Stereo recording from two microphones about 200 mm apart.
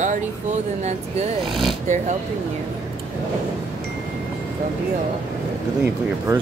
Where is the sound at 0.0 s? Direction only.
35° right (ahead or behind).